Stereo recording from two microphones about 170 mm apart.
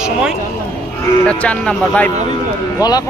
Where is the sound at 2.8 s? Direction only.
25° left (ahead or behind).